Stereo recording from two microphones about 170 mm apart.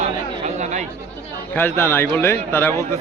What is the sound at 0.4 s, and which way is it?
Chatter, 45° right (ahead or behind).